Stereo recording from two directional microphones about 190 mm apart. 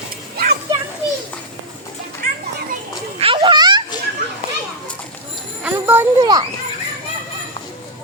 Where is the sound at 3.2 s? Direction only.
30° right (ahead or behind).